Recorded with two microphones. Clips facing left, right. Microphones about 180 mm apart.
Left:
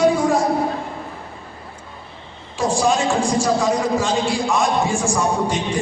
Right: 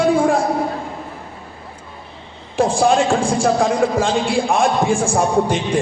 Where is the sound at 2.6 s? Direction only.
55° right (ahead or behind).